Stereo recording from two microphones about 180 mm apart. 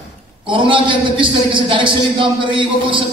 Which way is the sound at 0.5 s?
30° right (ahead or behind).